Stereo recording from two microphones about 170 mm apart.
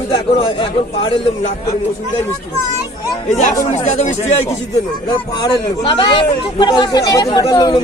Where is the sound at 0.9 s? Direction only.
35° left (ahead or behind).